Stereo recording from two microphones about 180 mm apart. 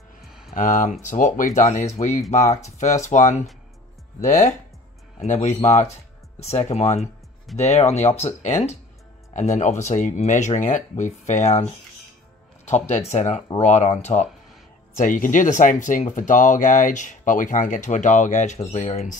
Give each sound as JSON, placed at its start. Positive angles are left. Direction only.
{"t": 0.3, "sound": "a sound", "side_deg": -5}
{"t": 0.6, "sound": "speech", "side_deg": 45}
{"t": 9.3, "sound": "speech", "side_deg": 40}
{"t": 14.1, "sound": "speech", "side_deg": 30}
{"t": 15.0, "sound": "speech", "side_deg": 45}